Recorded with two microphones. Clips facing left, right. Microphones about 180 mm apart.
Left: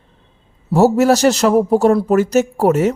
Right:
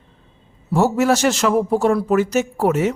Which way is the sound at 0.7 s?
40° left (ahead or behind).